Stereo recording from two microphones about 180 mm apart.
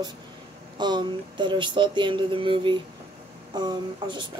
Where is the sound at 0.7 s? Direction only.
25° right (ahead or behind).